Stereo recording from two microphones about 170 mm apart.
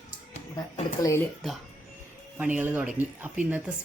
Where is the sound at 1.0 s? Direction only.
15° left (ahead or behind).